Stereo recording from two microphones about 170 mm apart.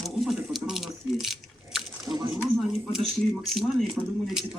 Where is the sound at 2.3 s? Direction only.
Centre (ahead or behind).